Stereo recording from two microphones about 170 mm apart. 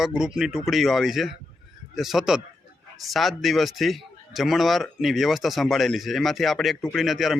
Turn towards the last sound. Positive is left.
turn(degrees=0)  # may be behind; listen again after turning